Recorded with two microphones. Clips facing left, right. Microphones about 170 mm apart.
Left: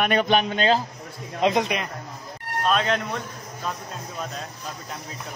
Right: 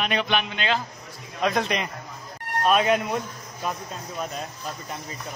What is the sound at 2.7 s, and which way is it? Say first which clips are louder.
A man's voice: right 3 dB; 10° right (ahead or behind).